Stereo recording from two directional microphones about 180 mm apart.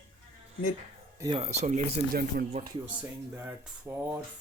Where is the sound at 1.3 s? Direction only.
35° right (ahead or behind).